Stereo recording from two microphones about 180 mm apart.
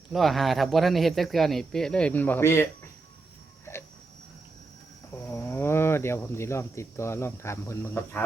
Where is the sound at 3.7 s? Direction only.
15° left (ahead or behind).